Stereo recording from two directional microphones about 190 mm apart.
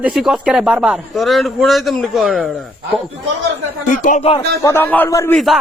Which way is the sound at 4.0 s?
40° left (ahead or behind).